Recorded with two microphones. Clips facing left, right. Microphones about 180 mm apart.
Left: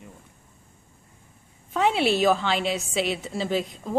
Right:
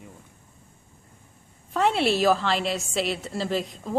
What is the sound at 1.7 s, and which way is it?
A woman's voice, centre (ahead or behind).